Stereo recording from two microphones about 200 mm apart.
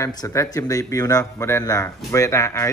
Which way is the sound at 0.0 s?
15° left (ahead or behind).